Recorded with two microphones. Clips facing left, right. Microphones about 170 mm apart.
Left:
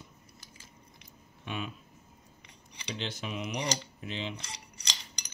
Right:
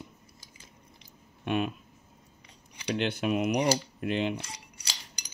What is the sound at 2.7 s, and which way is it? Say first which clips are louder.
Cutlery: right 9 dB; 60° right (ahead or behind).